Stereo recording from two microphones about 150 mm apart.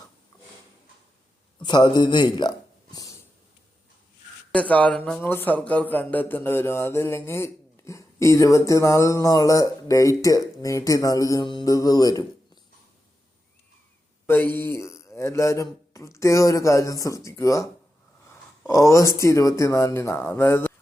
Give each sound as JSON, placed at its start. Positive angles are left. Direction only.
{"t": 1.5, "sound": "speech", "side_deg": 30}
{"t": 4.5, "sound": "speech", "side_deg": 10}
{"t": 14.3, "sound": "speech", "side_deg": 15}
{"t": 18.7, "sound": "speech", "side_deg": 20}